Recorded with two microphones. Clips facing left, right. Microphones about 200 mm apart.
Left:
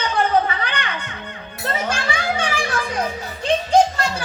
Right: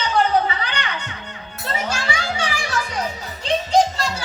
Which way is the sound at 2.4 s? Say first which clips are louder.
Left 2 dB; 55° left (ahead or behind).